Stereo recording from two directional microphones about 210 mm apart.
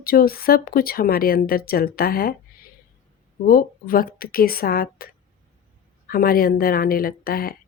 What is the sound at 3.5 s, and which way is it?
Speech, 45° left (ahead or behind).